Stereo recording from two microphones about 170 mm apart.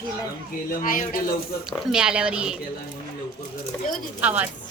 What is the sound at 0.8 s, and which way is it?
Speech, 55° left (ahead or behind).